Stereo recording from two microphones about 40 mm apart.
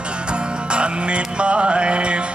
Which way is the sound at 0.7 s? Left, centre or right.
Right.